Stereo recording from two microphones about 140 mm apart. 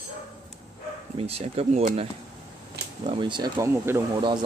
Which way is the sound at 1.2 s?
45° right (ahead or behind).